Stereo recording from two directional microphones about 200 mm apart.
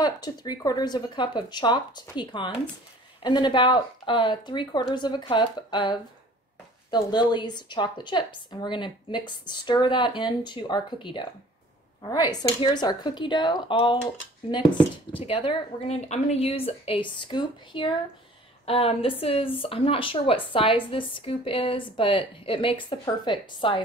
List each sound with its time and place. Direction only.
0.0 s speech: 20° left (ahead or behind)
15.1 s speech: 25° left (ahead or behind)